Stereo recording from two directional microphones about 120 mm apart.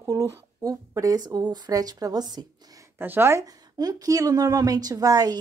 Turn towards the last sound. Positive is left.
turn(degrees=-30)  # may be behind; listen again after turning